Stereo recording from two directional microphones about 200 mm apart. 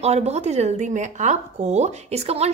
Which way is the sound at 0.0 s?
30° right (ahead or behind).